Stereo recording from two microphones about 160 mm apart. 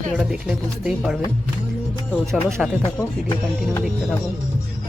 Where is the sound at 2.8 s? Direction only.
25° left (ahead or behind).